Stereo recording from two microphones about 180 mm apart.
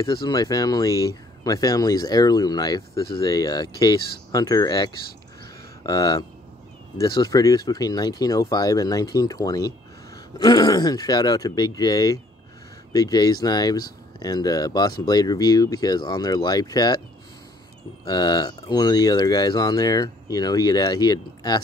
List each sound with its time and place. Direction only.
0.0 s speech: 25° left (ahead or behind)
18.0 s speech: 20° left (ahead or behind)